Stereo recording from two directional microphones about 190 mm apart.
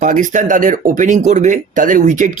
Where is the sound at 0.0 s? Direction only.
40° right (ahead or behind).